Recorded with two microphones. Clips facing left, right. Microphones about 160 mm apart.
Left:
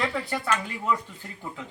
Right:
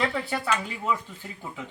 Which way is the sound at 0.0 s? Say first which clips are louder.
Right 1 dB; centre (ahead or behind).